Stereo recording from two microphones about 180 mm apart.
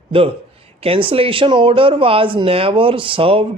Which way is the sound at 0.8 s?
30° right (ahead or behind).